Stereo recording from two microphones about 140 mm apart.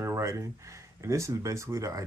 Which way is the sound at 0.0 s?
20° right (ahead or behind).